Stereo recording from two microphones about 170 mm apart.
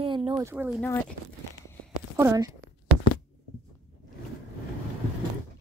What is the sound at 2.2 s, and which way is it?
Speech, 20° right (ahead or behind).